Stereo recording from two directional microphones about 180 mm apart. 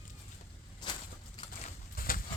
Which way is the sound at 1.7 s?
50° left (ahead or behind).